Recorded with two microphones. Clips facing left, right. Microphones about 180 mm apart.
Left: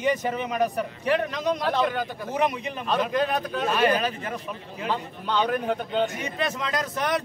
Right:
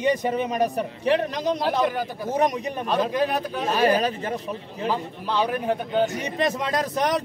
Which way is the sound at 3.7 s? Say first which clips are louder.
Right 3 dB; 35° right (ahead or behind).